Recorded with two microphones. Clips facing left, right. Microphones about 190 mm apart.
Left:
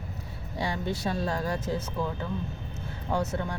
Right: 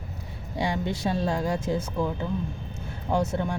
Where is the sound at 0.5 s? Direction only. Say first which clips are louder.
Right 3 dB; 20° right (ahead or behind).